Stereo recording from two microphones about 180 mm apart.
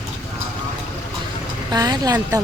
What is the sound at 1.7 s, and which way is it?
Speech, 20° right (ahead or behind).